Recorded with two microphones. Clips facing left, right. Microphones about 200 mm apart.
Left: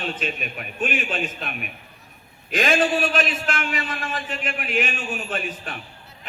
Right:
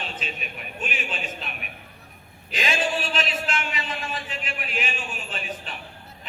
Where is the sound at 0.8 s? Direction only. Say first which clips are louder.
Left 7 dB; 50° left (ahead or behind).